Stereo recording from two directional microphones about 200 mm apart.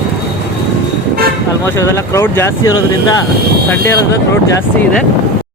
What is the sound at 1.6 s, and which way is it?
Speech, 15° left (ahead or behind).